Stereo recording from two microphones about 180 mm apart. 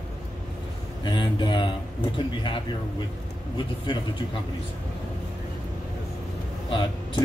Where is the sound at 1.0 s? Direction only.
25° left (ahead or behind).